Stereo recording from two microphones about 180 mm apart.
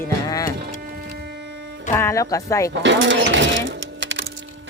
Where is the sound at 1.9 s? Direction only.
15° left (ahead or behind).